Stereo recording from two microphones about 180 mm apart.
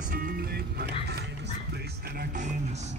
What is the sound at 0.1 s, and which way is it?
Music, 60° right (ahead or behind).